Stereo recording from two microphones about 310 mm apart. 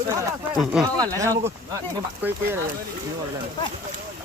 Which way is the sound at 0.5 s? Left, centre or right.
Centre.